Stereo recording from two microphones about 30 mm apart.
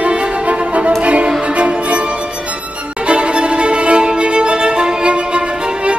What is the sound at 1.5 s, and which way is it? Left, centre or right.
Music, right.